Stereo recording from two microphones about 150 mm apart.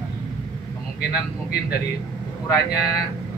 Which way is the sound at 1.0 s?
90° left.